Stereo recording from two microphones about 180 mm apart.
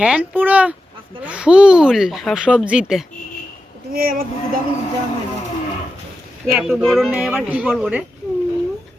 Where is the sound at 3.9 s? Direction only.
55° right (ahead or behind).